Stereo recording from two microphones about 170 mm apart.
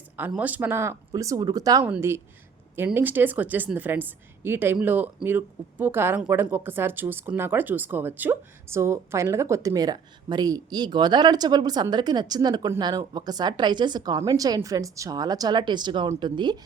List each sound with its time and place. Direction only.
0.2 s a woman's voice: 10° right (ahead or behind); by 16.6 s 25° right (ahead or behind)